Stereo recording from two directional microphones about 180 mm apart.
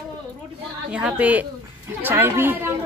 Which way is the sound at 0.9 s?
5° right (ahead or behind).